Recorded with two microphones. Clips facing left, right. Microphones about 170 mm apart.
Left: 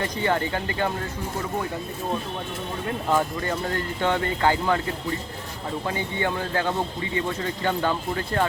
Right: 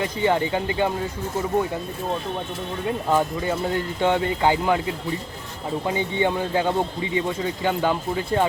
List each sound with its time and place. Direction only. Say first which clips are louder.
0.0 s speech: right 3 dB; 15° right (ahead or behind)
3.1 s speech: right 2 dB; 10° right (ahead or behind)
5.8 s speech: right 5 dB; 20° right (ahead or behind)